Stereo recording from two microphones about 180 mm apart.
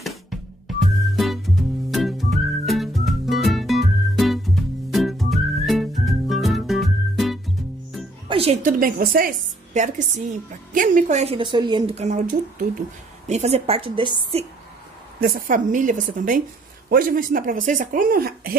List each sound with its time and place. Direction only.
0.0 s music: centre (ahead or behind)
4.9 s whistling: centre (ahead or behind)
8.3 s music: 35° right (ahead or behind)
8.6 s speech: 50° right (ahead or behind)
9.8 s a woman's voice: 40° right (ahead or behind); by 11.9 s 25° right (ahead or behind)
11.9 s a woman's voice: 40° right (ahead or behind)
15.1 s speech: 55° right (ahead or behind)